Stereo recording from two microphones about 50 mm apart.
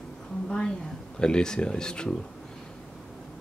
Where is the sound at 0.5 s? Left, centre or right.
Centre.